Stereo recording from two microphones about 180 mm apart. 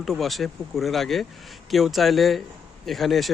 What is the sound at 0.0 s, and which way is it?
Speech, centre (ahead or behind).